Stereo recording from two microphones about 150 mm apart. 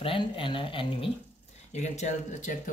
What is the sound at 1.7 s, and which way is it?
Speech, 50° left (ahead or behind).